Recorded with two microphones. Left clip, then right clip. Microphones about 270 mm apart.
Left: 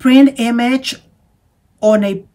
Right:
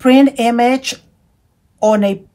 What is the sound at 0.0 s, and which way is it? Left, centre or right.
Speech, centre.